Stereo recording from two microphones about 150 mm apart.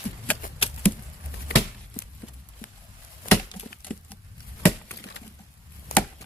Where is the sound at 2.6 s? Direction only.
65° left (ahead or behind).